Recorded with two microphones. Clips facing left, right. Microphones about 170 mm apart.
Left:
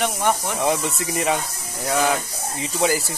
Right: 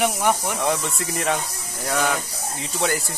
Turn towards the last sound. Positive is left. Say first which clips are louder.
# left 3 dB
turn(degrees=0)  # may be behind; listen again after turning